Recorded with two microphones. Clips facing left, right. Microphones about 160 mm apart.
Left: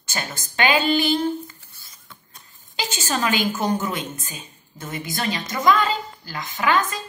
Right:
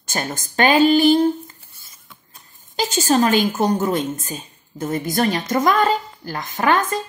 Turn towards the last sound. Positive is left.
turn(degrees=-50)  # may be behind; listen again after turning